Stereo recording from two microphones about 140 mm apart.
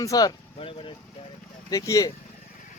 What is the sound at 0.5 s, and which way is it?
Speech, 40° left (ahead or behind).